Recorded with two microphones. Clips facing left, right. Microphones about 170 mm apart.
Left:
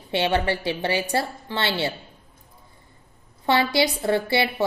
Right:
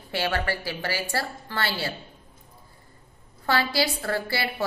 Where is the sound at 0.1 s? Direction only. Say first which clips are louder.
Left 5 dB; 20° left (ahead or behind).